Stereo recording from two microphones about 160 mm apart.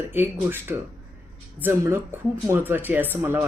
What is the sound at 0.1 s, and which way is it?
Speech, 15° right (ahead or behind).